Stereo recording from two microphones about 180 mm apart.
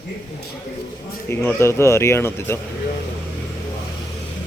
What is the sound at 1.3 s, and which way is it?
Speech, 15° left (ahead or behind).